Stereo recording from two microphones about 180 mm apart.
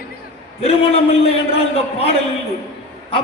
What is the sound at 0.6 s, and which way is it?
A man's voice, 35° left (ahead or behind).